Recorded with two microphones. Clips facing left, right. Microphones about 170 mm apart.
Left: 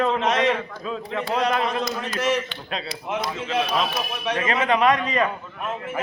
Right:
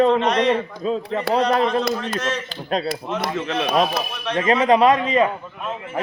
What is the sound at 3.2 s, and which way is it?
Speech, 65° right (ahead or behind).